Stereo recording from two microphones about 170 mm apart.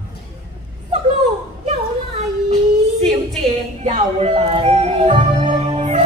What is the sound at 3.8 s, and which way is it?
Music, 35° right (ahead or behind).